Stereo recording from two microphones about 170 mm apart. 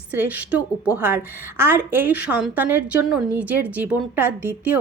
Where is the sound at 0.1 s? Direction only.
10° right (ahead or behind).